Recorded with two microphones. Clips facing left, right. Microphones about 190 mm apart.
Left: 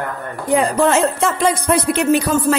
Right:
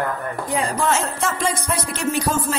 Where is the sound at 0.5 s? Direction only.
60° left (ahead or behind).